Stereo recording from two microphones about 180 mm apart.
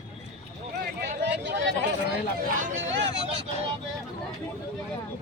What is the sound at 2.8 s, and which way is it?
Speech, 85° right.